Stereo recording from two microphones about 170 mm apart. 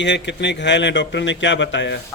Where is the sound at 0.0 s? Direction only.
90° left.